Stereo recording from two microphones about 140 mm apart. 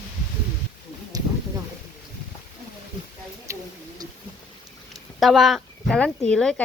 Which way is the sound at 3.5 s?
20° right (ahead or behind).